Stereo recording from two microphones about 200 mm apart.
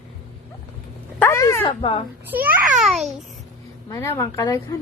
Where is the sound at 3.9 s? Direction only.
15° left (ahead or behind).